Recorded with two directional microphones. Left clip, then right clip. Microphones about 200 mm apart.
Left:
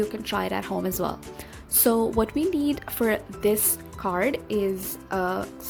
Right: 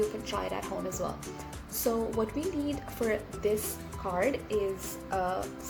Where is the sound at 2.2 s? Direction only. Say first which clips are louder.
Left 8 dB; 40° left (ahead or behind).